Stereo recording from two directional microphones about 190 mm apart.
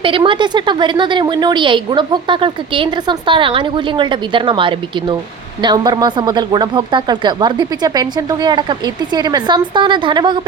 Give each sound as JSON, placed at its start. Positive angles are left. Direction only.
{"t": 0.0, "sound": "a woman's voice", "side_deg": -25}